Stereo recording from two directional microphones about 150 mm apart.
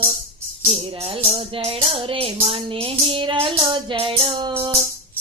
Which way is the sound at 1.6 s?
40° right (ahead or behind).